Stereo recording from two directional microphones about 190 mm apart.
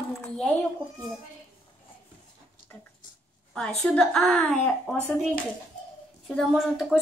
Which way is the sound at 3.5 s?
Centre (ahead or behind).